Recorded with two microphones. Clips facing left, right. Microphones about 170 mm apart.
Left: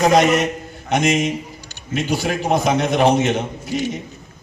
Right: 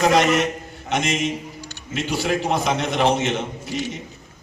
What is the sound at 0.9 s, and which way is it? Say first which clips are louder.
A man's voice: left 5 dB; 40° left (ahead or behind).